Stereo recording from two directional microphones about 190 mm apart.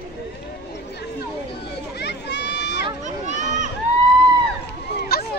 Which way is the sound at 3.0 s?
40° right (ahead or behind).